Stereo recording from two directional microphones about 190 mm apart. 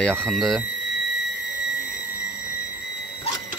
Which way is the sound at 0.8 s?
65° left (ahead or behind).